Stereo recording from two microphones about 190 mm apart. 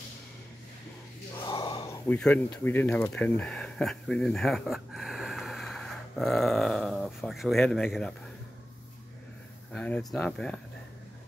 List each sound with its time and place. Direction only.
1.4 s gasp: 25° left (ahead or behind)
2.0 s speech: 5° left (ahead or behind)
9.7 s speech: 5° left (ahead or behind)